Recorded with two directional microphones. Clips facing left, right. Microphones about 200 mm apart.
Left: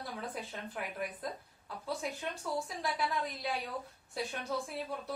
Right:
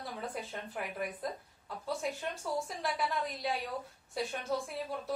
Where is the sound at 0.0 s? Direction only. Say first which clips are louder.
Right 1 dB; centre (ahead or behind).